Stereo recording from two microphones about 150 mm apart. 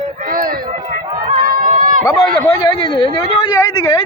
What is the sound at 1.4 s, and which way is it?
Run, 70° right (ahead or behind).